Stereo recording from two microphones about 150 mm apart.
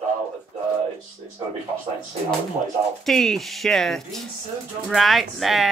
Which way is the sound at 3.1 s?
Centre (ahead or behind).